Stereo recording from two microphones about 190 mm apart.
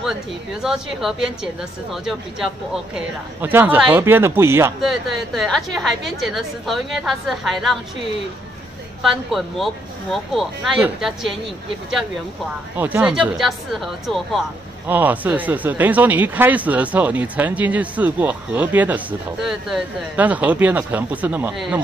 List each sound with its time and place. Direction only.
0.6 s a woman's voice: centre (ahead or behind)
3.3 s speech: 10° right (ahead or behind)
4.8 s a woman's voice: centre (ahead or behind)
9.3 s a woman's voice: centre (ahead or behind)
12.7 s a woman's voice: 10° right (ahead or behind)